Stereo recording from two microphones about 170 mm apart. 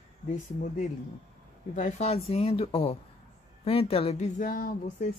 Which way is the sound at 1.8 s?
40° left (ahead or behind).